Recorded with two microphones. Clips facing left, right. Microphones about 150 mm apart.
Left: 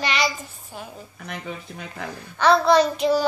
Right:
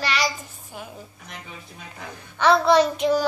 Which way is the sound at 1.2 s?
65° left (ahead or behind).